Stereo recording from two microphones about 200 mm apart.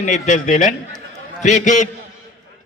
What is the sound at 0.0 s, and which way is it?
A man's voice, 40° left (ahead or behind).